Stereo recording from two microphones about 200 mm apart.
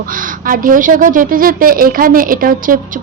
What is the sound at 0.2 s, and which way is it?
Speech, 45° right (ahead or behind).